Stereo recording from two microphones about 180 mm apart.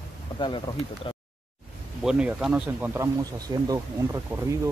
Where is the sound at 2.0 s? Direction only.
5° right (ahead or behind).